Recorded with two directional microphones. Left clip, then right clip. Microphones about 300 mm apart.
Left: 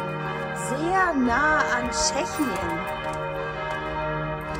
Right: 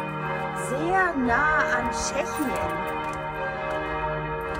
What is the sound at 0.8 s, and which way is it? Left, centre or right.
Speech, centre.